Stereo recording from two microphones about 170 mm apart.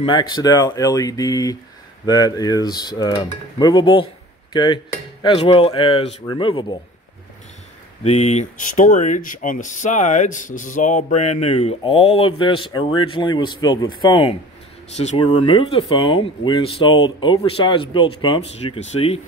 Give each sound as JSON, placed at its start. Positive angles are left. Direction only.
{"t": 0.0, "sound": "cutlery", "side_deg": 30}
{"t": 5.2, "sound": "speech", "side_deg": 30}
{"t": 6.2, "sound": "cutlery", "side_deg": 30}
{"t": 8.0, "sound": "speech", "side_deg": 40}